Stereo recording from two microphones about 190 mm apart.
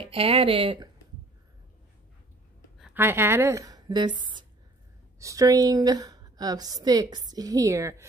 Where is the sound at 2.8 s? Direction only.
10° right (ahead or behind).